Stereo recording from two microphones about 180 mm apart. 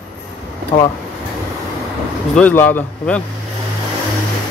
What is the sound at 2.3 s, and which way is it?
Speech, 10° left (ahead or behind).